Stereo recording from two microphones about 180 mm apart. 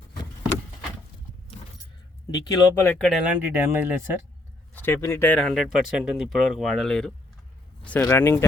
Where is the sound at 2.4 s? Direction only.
25° left (ahead or behind).